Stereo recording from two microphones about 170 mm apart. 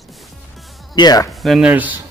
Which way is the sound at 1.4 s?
Centre (ahead or behind).